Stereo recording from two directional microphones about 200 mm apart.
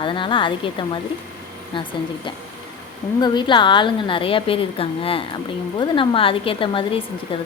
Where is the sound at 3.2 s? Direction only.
25° left (ahead or behind).